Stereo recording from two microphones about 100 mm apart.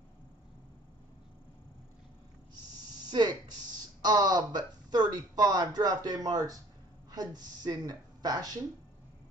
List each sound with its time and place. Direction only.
3.1 s a woman's voice: 45° right (ahead or behind)